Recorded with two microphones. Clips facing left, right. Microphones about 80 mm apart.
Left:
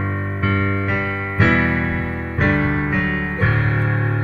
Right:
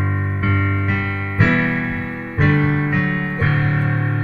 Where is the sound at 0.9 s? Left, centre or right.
Centre.